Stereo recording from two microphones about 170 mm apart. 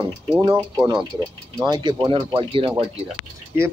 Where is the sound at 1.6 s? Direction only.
25° right (ahead or behind).